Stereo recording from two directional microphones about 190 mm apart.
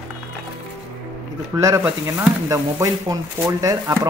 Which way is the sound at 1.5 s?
15° right (ahead or behind).